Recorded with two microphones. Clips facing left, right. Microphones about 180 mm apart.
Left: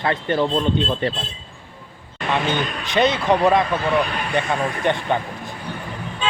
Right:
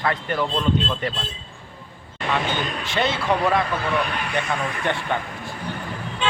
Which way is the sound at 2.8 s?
20° left (ahead or behind).